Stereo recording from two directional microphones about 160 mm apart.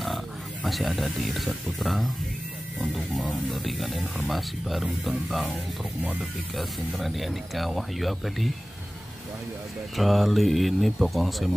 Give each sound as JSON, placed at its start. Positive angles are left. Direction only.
{"t": 0.7, "sound": "speech", "side_deg": 0}
{"t": 9.9, "sound": "speech", "side_deg": 0}